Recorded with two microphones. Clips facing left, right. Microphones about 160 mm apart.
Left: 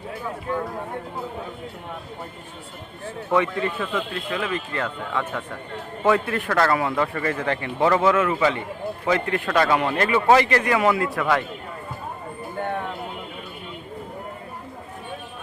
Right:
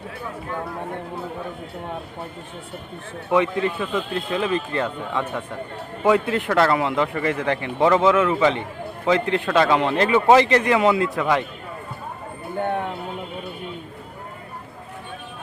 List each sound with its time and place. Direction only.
3.2 s a man's voice: 20° right (ahead or behind)